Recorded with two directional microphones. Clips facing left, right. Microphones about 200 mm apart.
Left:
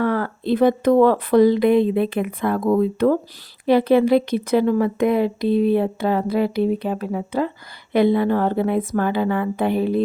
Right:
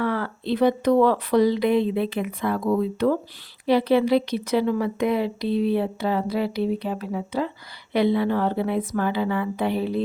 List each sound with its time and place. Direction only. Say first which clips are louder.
0.0 s speech: left 4 dB; 50° left (ahead or behind)